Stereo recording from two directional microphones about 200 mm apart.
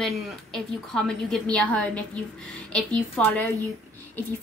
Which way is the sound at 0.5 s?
5° left (ahead or behind).